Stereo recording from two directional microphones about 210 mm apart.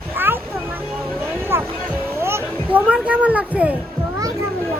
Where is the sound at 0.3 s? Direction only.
10° right (ahead or behind).